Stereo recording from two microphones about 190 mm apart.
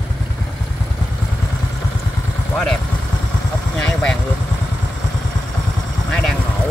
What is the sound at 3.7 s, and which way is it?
Vehicle, 5° left (ahead or behind).